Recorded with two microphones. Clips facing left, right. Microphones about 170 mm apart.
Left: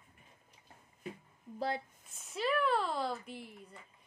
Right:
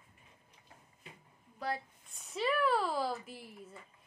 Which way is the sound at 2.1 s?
Centre (ahead or behind).